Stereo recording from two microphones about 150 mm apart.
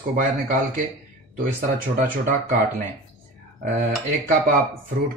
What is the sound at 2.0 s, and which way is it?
Speech, 90° right.